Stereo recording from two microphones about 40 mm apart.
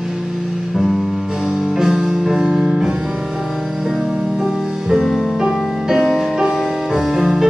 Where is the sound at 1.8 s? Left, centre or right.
Centre.